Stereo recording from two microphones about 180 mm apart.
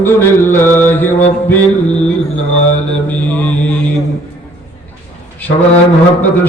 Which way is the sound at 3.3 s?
10° left (ahead or behind).